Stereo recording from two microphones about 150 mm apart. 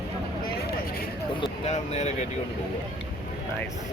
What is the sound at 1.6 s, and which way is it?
Speech, 50° left (ahead or behind).